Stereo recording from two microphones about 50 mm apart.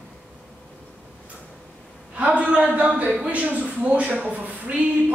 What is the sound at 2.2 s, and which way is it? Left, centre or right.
A woman's voice, right.